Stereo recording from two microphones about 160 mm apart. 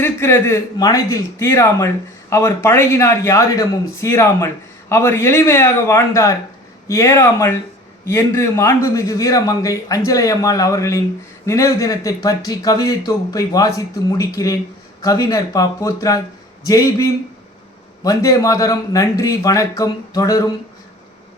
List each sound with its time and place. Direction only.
0.0 s a man's voice: 15° left (ahead or behind)